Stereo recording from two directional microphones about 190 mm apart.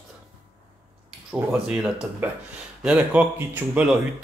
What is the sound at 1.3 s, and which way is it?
Speech, 5° right (ahead or behind).